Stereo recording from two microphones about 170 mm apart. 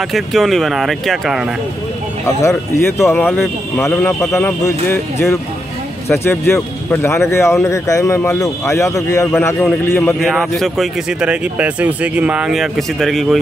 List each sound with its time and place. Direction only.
0.1 s speech: centre (ahead or behind)
2.2 s speech: 15° left (ahead or behind)
10.2 s speech: centre (ahead or behind)